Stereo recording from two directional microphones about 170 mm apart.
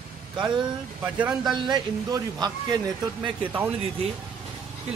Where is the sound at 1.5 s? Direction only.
25° right (ahead or behind).